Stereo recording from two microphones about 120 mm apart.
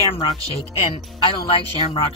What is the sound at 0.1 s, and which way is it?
Speech, 40° left (ahead or behind).